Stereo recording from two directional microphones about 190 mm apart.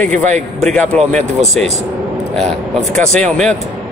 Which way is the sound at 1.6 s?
35° right (ahead or behind).